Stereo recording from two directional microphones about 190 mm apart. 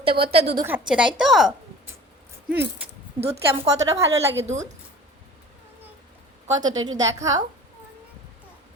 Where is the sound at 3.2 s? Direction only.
30° right (ahead or behind).